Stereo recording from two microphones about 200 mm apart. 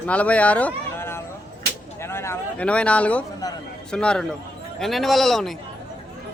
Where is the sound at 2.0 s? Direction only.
10° left (ahead or behind).